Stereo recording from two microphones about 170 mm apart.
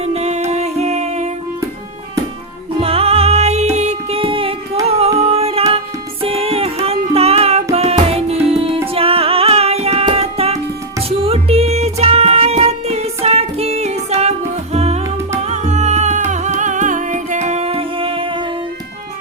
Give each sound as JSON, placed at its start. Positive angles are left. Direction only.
{"t": 0.0, "sound": "music", "side_deg": -40}
{"t": 2.8, "sound": "music", "side_deg": -35}